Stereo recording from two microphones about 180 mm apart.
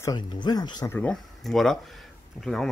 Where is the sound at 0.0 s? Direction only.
20° left (ahead or behind).